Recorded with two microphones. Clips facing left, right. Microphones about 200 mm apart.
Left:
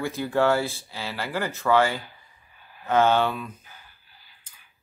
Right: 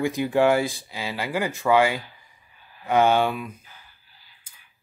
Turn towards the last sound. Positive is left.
turn(degrees=-15)  # may be behind; listen again after turning